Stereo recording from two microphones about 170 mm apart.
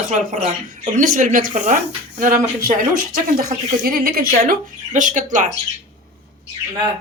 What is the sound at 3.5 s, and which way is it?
Speech, 55° right (ahead or behind).